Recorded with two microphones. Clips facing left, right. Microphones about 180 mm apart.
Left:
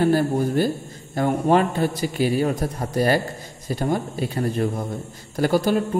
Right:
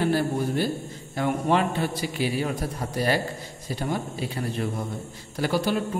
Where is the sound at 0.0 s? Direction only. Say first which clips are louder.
Left 5 dB; 45° left (ahead or behind).